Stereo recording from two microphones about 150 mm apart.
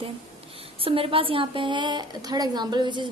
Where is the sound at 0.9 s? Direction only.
35° right (ahead or behind).